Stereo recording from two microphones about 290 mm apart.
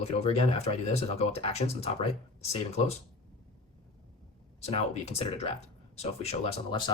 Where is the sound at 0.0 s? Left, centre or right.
Left.